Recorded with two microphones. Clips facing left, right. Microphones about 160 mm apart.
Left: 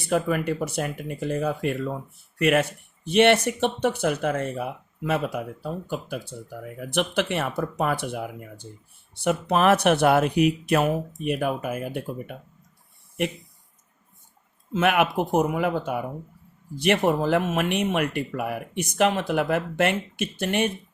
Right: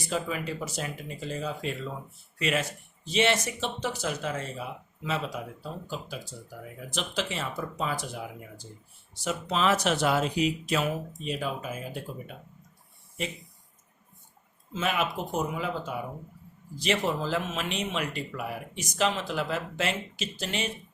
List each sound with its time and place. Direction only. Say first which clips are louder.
0.0 s speech: left 8 dB; 60° left (ahead or behind)
14.7 s speech: left 8 dB; 65° left (ahead or behind)